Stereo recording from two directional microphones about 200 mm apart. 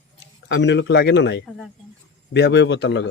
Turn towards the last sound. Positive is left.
turn(degrees=60)  # may be behind; listen again after turning